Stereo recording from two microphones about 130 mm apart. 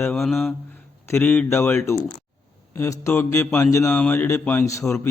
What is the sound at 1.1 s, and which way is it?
Mantra, 15° left (ahead or behind).